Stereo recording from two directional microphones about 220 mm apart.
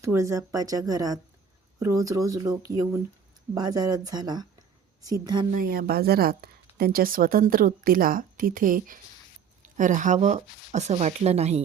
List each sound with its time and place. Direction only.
0.0 s speech: 15° right (ahead or behind)
5.5 s a woman's voice: 40° right (ahead or behind)